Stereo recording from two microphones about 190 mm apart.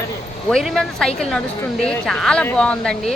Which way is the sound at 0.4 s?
Centre (ahead or behind).